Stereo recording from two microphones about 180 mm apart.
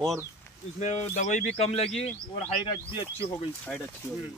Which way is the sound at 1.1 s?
45° left (ahead or behind).